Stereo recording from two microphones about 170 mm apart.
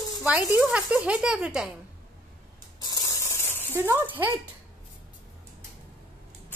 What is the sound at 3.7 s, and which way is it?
Speech, 10° right (ahead or behind).